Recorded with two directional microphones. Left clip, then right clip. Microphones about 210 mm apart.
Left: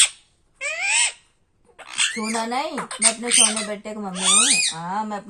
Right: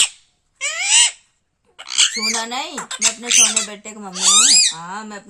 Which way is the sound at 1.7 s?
35° right (ahead or behind).